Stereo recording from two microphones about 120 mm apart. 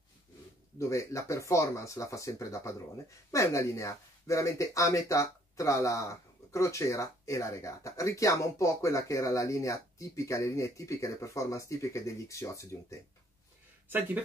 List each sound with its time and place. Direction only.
0.7 s speech: 25° left (ahead or behind)
13.8 s speech: 15° right (ahead or behind)